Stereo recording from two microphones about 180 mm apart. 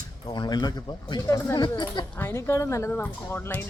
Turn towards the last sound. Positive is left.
turn(degrees=10)  # may be behind; listen again after turning